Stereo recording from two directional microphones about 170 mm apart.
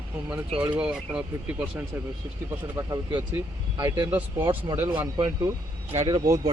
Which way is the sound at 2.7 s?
25° right (ahead or behind).